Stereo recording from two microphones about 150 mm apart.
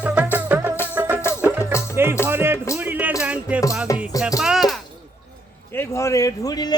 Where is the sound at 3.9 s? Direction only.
25° left (ahead or behind).